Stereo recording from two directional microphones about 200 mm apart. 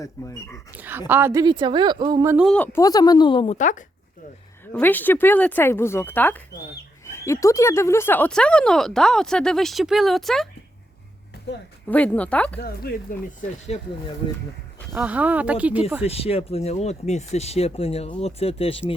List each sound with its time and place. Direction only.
0.0 s speech: 15° left (ahead or behind)
0.8 s a woman's voice: 10° right (ahead or behind)
2.3 s speech: centre (ahead or behind)
2.8 s speech: 20° left (ahead or behind)
3.6 s speech: 40° left (ahead or behind)
4.6 s speech: 10° left (ahead or behind)
11.9 s speech: 5° left (ahead or behind)
12.5 s speech: 50° left (ahead or behind)
13.7 s speech: 30° left (ahead or behind)
14.8 s speech: 5° right (ahead or behind)
16.0 s speech: 30° left (ahead or behind)